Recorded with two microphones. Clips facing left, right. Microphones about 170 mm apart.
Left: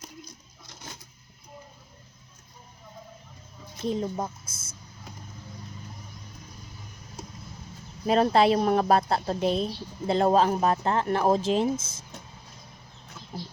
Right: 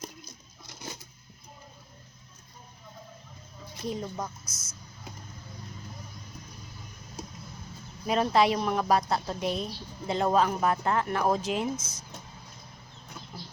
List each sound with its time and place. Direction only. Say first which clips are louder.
3.8 s a woman's voice: left 5 dB; 25° left (ahead or behind)
8.0 s speech: left 3 dB; 35° left (ahead or behind)